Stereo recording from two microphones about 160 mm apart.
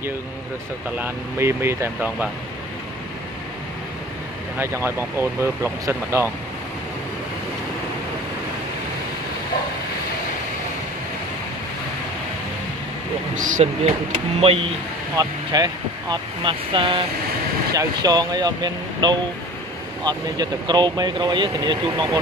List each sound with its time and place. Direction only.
0.9 s speech: 15° right (ahead or behind)
4.6 s speech: 15° right (ahead or behind)
13.3 s speech: 55° right (ahead or behind)
14.4 s speech: 35° right (ahead or behind)
15.1 s speech: 25° right (ahead or behind)